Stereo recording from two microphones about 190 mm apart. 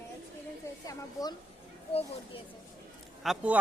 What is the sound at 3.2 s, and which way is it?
Speech, 5° right (ahead or behind).